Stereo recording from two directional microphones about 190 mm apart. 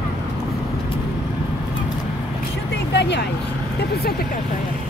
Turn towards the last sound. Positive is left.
turn(degrees=65)  # may be behind; listen again after turning